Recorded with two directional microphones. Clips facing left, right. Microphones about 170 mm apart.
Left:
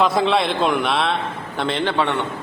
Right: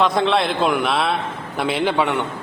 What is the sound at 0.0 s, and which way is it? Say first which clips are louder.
A man's voice: even; centre (ahead or behind).